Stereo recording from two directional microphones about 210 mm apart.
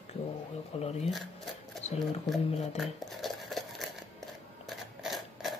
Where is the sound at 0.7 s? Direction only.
30° left (ahead or behind).